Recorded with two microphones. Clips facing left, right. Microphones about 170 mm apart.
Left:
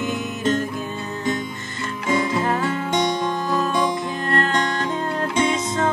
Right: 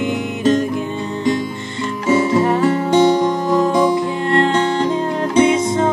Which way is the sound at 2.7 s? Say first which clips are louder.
Right 9 dB; 40° right (ahead or behind).